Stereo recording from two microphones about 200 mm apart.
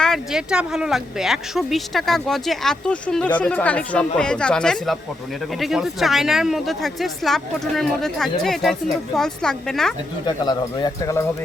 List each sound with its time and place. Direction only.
0.0 s speech: centre (ahead or behind)
10.2 s speech: 20° left (ahead or behind)